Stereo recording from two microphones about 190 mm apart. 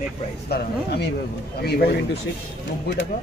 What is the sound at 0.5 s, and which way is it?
A man's voice, 55° left (ahead or behind).